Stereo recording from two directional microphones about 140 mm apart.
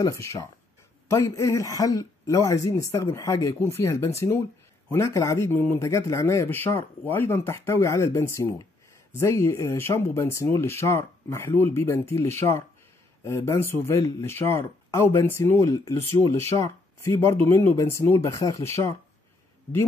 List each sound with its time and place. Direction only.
0.0 s speech: 25° left (ahead or behind)